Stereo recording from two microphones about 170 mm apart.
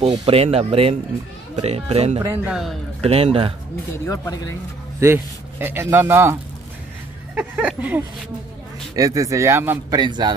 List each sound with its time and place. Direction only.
0.0 s speech: 30° right (ahead or behind)
2.2 s speech: 10° right (ahead or behind)
3.0 s speech: 35° right (ahead or behind)
4.1 s speech: 20° left (ahead or behind)
5.0 s speech: 15° right (ahead or behind)
7.3 s speech: 5° right (ahead or behind)
8.9 s speech: 20° right (ahead or behind)
9.9 s speech: 25° right (ahead or behind)